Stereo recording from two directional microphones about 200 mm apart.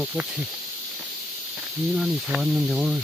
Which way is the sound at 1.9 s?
5° right (ahead or behind).